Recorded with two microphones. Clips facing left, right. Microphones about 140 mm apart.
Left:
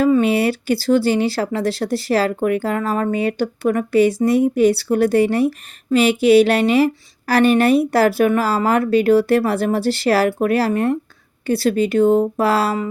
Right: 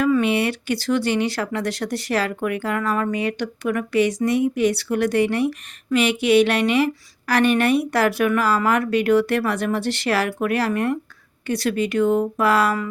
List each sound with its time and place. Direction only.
0.0 s speech: 35° left (ahead or behind)